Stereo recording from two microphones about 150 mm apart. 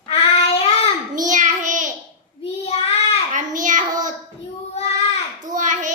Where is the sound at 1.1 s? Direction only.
60° right (ahead or behind).